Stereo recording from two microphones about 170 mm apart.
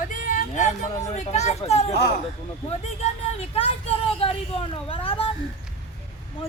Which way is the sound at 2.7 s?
40° left (ahead or behind).